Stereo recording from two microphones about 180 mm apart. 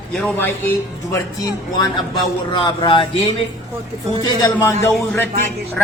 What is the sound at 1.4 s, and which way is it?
Speech, 20° left (ahead or behind).